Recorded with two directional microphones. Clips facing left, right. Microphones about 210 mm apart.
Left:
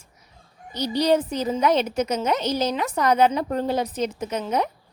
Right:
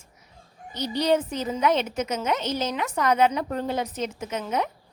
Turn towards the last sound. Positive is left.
turn(degrees=35)  # may be behind; listen again after turning